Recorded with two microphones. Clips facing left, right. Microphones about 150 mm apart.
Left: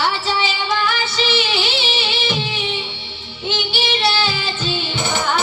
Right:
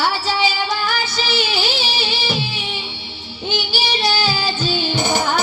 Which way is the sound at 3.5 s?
40° right (ahead or behind).